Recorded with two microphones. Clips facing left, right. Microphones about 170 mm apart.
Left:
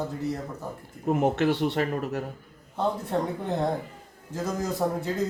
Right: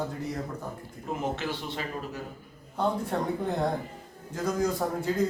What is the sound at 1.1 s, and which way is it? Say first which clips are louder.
A man's voice: left 8 dB; 60° left (ahead or behind).